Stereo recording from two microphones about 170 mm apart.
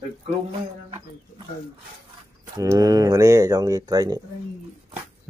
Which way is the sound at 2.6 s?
20° right (ahead or behind).